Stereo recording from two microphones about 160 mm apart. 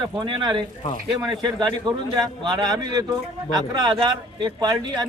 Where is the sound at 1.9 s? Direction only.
25° right (ahead or behind).